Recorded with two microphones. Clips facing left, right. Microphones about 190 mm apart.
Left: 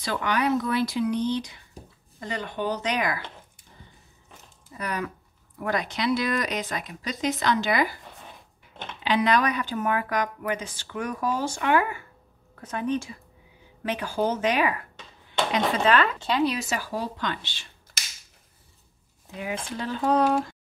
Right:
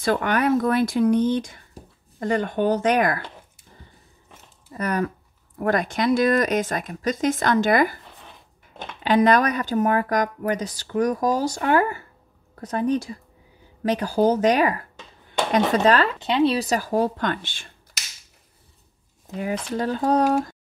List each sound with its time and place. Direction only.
0.0 s speech: 50° right (ahead or behind)
4.7 s speech: 45° right (ahead or behind)
9.0 s speech: 45° right (ahead or behind)
16.2 s speech: 25° right (ahead or behind); by 17.6 s 50° right (ahead or behind)
19.2 s speech: 40° right (ahead or behind)